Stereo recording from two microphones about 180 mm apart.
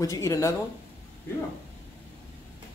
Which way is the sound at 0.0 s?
15° left (ahead or behind).